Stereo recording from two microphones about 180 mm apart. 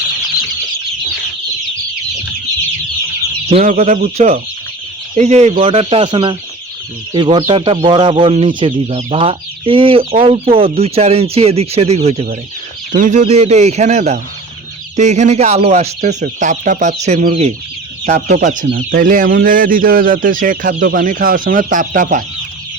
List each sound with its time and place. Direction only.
3.6 s speech: 50° right (ahead or behind)
12.9 s speech: 45° right (ahead or behind)
16.0 s speech: 45° right (ahead or behind)
18.0 s speech: 50° right (ahead or behind)